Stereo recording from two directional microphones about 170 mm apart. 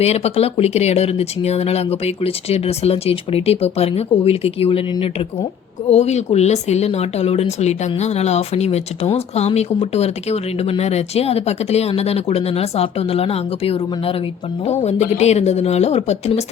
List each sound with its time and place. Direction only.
0.0 s speech: 40° left (ahead or behind)